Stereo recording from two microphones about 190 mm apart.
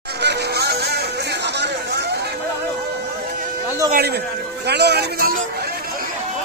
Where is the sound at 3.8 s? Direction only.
55° right (ahead or behind).